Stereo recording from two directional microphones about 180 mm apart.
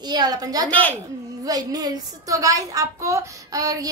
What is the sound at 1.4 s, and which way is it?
A woman's voice, 20° right (ahead or behind).